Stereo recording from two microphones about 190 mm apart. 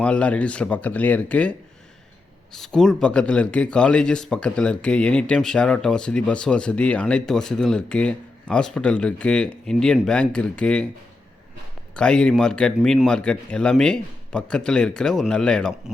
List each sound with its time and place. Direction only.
0.0 s speech: 5° left (ahead or behind)
2.6 s speech: centre (ahead or behind)
11.9 s speech: 5° left (ahead or behind)